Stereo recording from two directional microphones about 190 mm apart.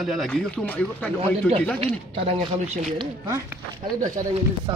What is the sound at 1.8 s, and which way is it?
Speech, 30° right (ahead or behind).